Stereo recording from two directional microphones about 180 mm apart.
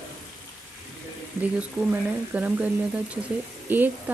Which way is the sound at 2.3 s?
10° right (ahead or behind).